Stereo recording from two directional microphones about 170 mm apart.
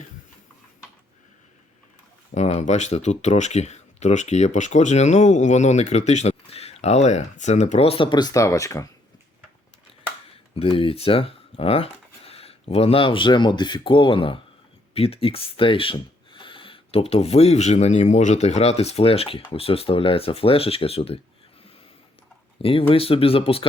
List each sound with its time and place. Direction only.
2.3 s speech: 40° left (ahead or behind); by 8.9 s 20° left (ahead or behind)
10.5 s speech: 35° left (ahead or behind)
22.6 s speech: 30° left (ahead or behind)